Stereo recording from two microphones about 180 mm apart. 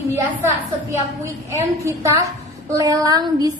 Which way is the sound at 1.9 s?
15° right (ahead or behind).